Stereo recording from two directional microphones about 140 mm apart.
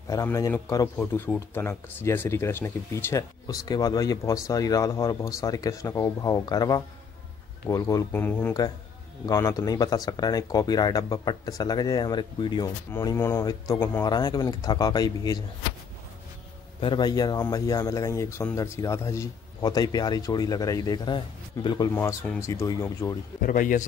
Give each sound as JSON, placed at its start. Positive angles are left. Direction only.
{"t": 0.1, "sound": "speech", "side_deg": 20}
{"t": 0.9, "sound": "speech", "side_deg": 15}
{"t": 9.2, "sound": "speech", "side_deg": 25}
{"t": 12.9, "sound": "speech", "side_deg": 20}
{"t": 16.8, "sound": "speech", "side_deg": 30}
{"t": 23.4, "sound": "a man's voice", "side_deg": 70}